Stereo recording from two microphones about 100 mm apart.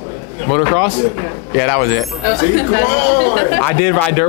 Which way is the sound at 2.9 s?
15° left (ahead or behind).